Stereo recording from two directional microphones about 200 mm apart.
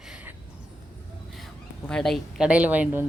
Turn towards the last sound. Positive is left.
turn(degrees=-5)  # may be behind; listen again after turning